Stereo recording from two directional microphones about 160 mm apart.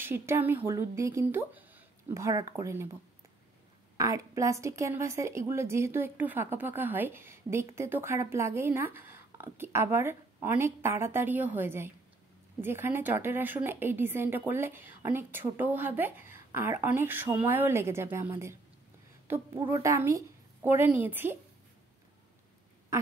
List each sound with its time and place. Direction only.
0.0 s a woman's voice: 15° right (ahead or behind)
3.9 s a woman's voice: 20° right (ahead or behind)